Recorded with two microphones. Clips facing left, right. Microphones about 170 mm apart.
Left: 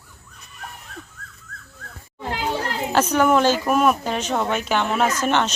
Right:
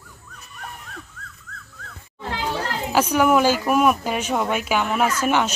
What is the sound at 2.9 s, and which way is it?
Speech, 10° right (ahead or behind).